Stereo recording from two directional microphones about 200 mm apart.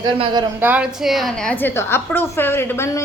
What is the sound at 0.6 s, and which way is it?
A woman's voice, 10° right (ahead or behind).